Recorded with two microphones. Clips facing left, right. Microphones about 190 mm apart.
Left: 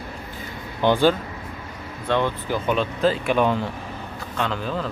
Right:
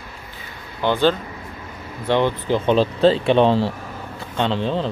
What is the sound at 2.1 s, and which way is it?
Speech, 20° right (ahead or behind).